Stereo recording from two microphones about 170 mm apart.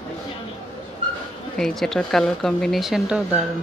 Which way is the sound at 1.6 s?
Centre (ahead or behind).